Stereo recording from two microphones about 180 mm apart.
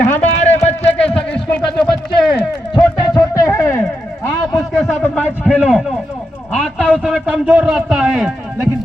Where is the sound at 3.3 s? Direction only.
15° left (ahead or behind).